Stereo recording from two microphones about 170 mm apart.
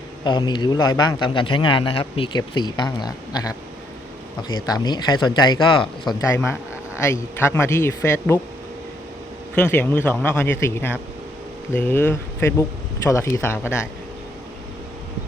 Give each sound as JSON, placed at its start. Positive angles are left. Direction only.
{"t": 0.3, "sound": "a man's voice", "side_deg": 25}
{"t": 6.1, "sound": "speech", "side_deg": 15}
{"t": 9.6, "sound": "speech", "side_deg": 10}